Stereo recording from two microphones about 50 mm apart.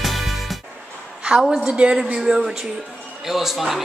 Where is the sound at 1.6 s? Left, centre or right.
Centre.